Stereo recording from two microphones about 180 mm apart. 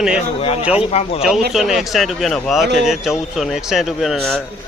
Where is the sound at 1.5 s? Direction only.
Centre (ahead or behind).